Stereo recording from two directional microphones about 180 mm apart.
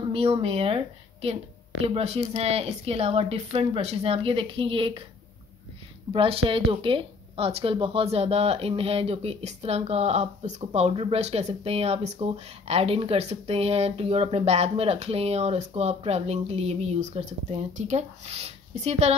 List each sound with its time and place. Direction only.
0.1 s speech: 30° right (ahead or behind)
6.1 s speech: 30° right (ahead or behind)